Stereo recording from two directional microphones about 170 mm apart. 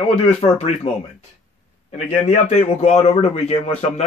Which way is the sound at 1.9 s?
40° left (ahead or behind).